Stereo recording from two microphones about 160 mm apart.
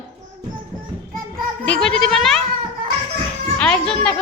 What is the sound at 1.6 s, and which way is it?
Speech, 5° left (ahead or behind).